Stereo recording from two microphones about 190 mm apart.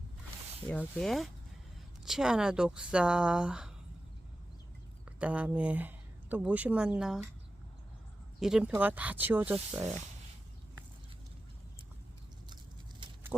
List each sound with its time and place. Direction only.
0.7 s speech: 5° left (ahead or behind)
5.0 s speech: 5° right (ahead or behind)
8.4 s speech: 5° right (ahead or behind)
13.0 s a sound: 25° right (ahead or behind)